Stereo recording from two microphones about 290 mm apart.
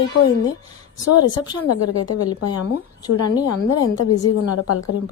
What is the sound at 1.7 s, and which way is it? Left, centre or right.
Speech, left.